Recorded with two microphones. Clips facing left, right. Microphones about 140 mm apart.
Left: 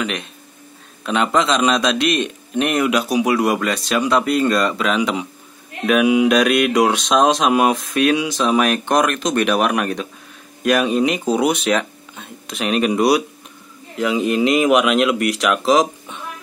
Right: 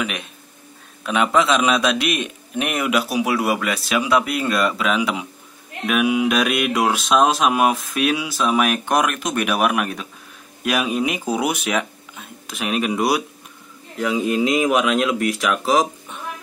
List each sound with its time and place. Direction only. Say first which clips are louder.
0.0 s a man's voice: left 2 dB; 5° right (ahead or behind)
14.2 s a man's voice: left 3 dB; 65° left (ahead or behind)
15.6 s speech: left 3 dB; centre (ahead or behind)